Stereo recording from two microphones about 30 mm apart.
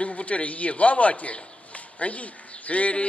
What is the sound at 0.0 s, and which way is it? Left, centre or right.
A man's voice, left.